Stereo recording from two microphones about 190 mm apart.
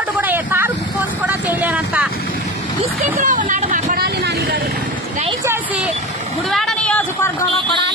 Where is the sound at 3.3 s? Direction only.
40° right (ahead or behind); by 4.6 s 60° right (ahead or behind).